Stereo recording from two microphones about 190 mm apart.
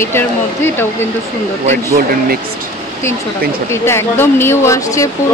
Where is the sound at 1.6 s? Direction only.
45° right (ahead or behind).